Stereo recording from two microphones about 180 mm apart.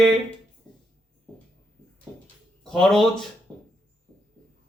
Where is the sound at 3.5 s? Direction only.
Centre (ahead or behind).